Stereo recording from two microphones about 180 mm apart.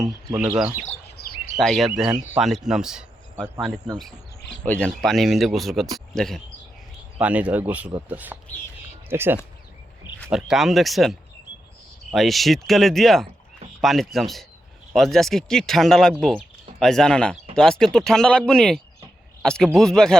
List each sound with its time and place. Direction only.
0.3 s speech: 5° right (ahead or behind)
1.2 s chirp: 60° left (ahead or behind)
1.5 s speech: centre (ahead or behind)
2.6 s a sound: 5° right (ahead or behind)
3.9 s speech: 5° left (ahead or behind); by 9.4 s 10° right (ahead or behind)
10.3 s speech: centre (ahead or behind)